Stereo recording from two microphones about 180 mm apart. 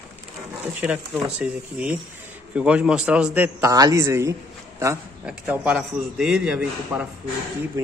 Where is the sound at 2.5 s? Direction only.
5° right (ahead or behind).